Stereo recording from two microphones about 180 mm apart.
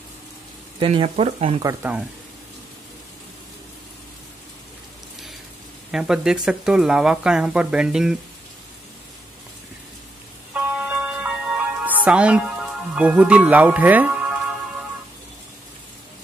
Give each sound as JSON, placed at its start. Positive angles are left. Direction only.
{"t": 0.7, "sound": "speech", "side_deg": -30}
{"t": 1.6, "sound": "speech", "side_deg": -15}
{"t": 5.9, "sound": "speech", "side_deg": -5}
{"t": 10.5, "sound": "music", "side_deg": -5}